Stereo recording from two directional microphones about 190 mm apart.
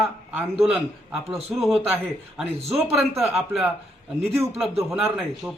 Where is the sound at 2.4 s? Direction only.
30° right (ahead or behind).